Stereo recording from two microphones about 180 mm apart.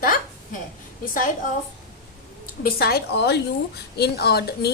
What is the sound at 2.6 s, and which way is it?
A woman's voice, 60° left (ahead or behind).